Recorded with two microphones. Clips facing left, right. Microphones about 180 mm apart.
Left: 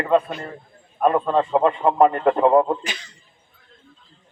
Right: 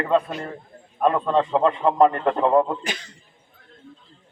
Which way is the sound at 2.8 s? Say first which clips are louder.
Right 2 dB; 55° right (ahead or behind).